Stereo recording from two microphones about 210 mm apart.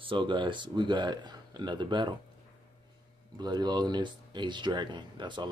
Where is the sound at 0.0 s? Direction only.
25° right (ahead or behind).